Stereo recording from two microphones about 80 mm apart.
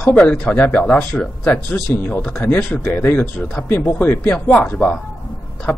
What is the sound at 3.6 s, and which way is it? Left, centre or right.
Speech, left.